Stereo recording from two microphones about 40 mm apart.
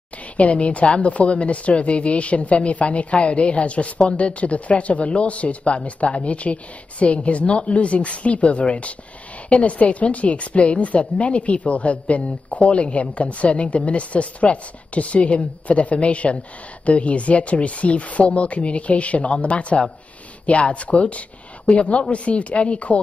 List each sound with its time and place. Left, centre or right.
0.4 s a woman's voice: left